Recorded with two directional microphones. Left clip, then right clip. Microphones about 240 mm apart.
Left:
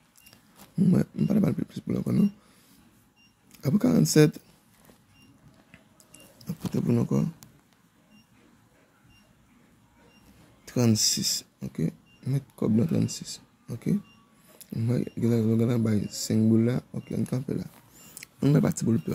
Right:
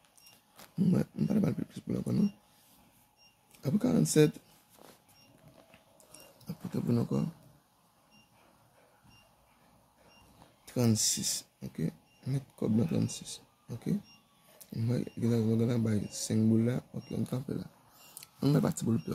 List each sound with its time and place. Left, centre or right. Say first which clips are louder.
0.7 s speech: left 6 dB; centre
3.6 s speech: left 6 dB; centre
6.4 s a sound: left 6 dB; centre
10.6 s speech: left 6 dB; centre